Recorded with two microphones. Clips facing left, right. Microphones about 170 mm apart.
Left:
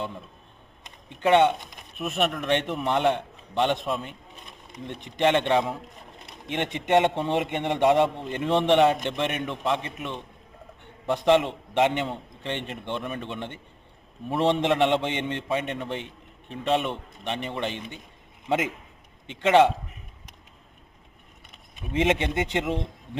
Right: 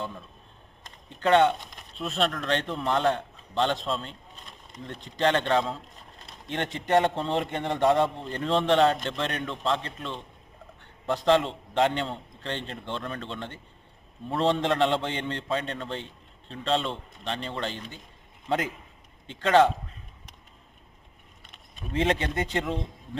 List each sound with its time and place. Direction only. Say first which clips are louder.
1.2 s a man's voice: left 1 dB; 20° left (ahead or behind)
21.8 s speech: left 2 dB; 20° left (ahead or behind)